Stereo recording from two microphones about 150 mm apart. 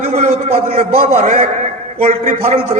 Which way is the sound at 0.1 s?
45° right (ahead or behind).